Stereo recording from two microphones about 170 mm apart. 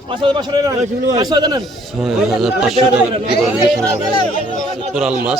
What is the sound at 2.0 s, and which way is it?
Speech, centre (ahead or behind).